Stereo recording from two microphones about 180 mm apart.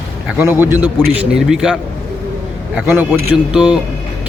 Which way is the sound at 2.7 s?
5° right (ahead or behind).